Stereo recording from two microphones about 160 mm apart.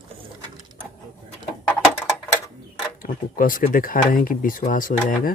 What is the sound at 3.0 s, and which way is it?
Speech, 60° left (ahead or behind).